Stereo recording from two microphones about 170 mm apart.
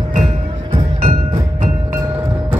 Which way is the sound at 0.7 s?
35° right (ahead or behind).